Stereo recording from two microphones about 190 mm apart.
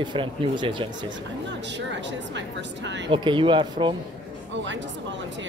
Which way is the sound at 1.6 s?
70° right (ahead or behind).